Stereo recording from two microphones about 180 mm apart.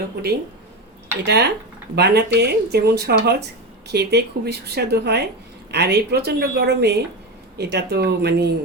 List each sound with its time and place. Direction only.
1.2 s speech: 65° right (ahead or behind)